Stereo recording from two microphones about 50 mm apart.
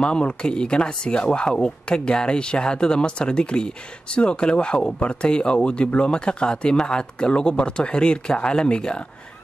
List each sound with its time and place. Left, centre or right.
0.0 s speech: centre